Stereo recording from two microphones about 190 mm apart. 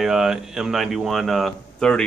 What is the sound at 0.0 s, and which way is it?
Speech, centre (ahead or behind).